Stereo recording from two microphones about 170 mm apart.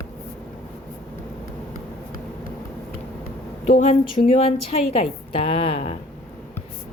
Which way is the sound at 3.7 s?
40° left (ahead or behind).